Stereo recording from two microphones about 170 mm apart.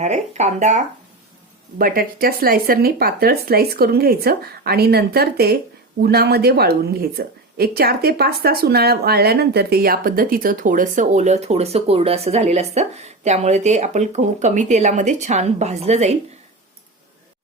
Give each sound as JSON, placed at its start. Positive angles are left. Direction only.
{"t": 0.0, "sound": "speech", "side_deg": -40}
{"t": 1.8, "sound": "speech", "side_deg": -60}